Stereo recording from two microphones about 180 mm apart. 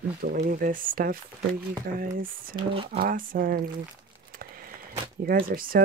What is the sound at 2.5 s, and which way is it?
Speech, 30° right (ahead or behind).